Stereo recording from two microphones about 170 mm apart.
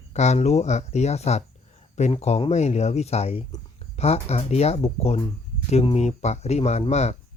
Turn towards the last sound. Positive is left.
turn(degrees=40)  # may be behind; listen again after turning